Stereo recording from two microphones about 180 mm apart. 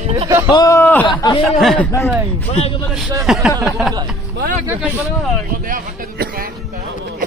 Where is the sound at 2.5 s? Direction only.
35° left (ahead or behind).